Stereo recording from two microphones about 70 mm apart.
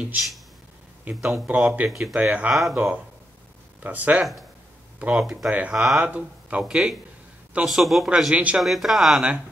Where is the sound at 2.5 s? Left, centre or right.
Centre.